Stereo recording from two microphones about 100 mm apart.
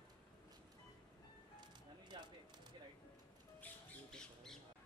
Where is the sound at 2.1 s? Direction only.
50° right (ahead or behind).